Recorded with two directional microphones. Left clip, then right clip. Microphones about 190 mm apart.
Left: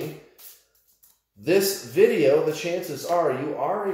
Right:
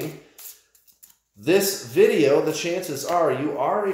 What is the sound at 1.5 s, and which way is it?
Speech, 35° right (ahead or behind).